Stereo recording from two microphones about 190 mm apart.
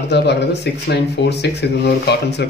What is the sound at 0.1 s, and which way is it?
Speech, 60° left (ahead or behind).